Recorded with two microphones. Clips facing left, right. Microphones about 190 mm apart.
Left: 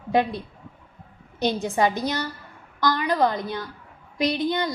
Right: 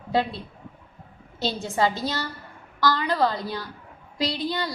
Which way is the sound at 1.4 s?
15° left (ahead or behind).